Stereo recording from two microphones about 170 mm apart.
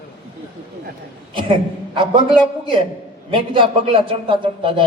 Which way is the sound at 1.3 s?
30° right (ahead or behind).